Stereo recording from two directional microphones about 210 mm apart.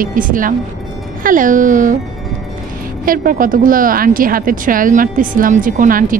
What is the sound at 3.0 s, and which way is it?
Speech, 40° right (ahead or behind).